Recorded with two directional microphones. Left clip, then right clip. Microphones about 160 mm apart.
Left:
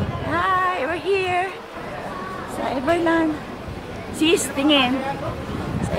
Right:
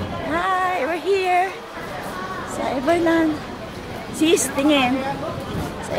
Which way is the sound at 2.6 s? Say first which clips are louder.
Right 1 dB; 15° right (ahead or behind).